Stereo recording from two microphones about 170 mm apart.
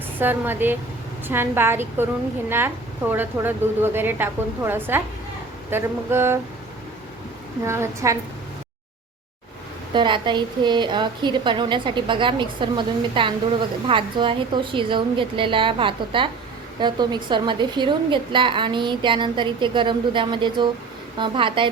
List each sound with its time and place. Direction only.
0.2 s a woman's voice: 10° right (ahead or behind)
7.6 s a woman's voice: 15° right (ahead or behind)
9.9 s a woman's voice: 30° right (ahead or behind)